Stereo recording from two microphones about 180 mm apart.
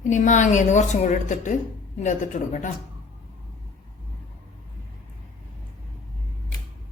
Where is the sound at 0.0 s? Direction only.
45° left (ahead or behind).